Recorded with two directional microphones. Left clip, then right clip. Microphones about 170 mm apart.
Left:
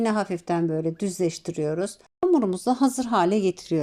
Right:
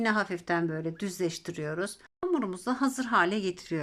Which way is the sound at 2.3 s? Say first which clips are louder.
Left 8 dB; 25° left (ahead or behind).